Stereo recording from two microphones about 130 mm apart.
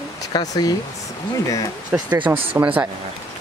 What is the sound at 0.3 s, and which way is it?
Speech, 35° left (ahead or behind).